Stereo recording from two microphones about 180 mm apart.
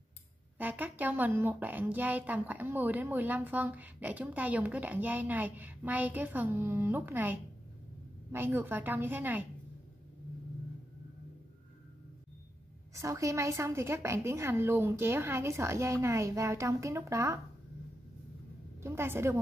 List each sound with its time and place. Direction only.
0.6 s speech: 10° right (ahead or behind)
12.9 s speech: 15° right (ahead or behind)
18.8 s speech: 15° right (ahead or behind)